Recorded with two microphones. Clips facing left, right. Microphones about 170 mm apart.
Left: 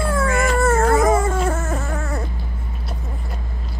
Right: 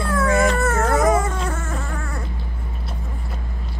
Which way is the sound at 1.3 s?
50° left (ahead or behind).